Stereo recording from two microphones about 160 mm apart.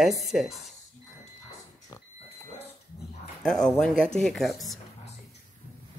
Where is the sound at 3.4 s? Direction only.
5° left (ahead or behind).